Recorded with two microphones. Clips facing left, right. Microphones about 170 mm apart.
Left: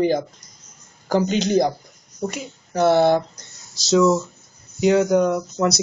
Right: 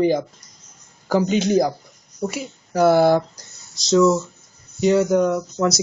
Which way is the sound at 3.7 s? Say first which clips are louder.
Right 1 dB; centre (ahead or behind).